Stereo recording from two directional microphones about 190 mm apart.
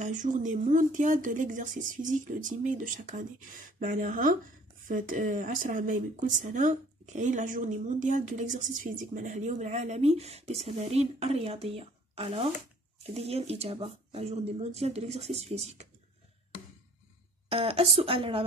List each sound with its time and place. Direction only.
0.0 s speech: 40° right (ahead or behind)
17.5 s speech: 30° right (ahead or behind)